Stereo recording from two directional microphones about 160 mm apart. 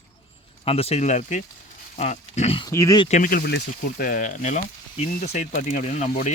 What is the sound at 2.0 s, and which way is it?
Pig, 45° left (ahead or behind).